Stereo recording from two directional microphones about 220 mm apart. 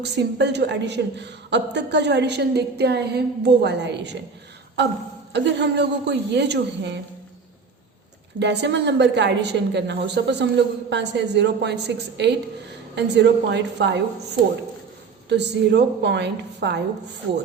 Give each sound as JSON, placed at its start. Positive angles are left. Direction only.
{"t": 0.0, "sound": "a woman's voice", "side_deg": -50}
{"t": 5.3, "sound": "a woman's voice", "side_deg": -50}
{"t": 8.4, "sound": "a woman's voice", "side_deg": -50}
{"t": 15.3, "sound": "a woman's voice", "side_deg": -50}